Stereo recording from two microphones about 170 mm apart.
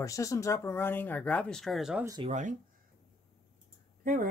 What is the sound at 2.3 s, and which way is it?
Speech, 45° right (ahead or behind).